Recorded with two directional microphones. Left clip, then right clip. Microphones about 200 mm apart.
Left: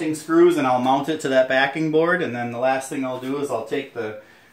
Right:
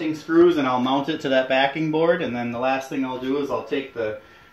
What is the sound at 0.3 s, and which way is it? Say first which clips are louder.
Speech: left 1 dB; 25° left (ahead or behind).